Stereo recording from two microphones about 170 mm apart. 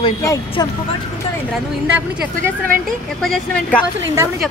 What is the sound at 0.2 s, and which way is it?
Speech, 20° left (ahead or behind).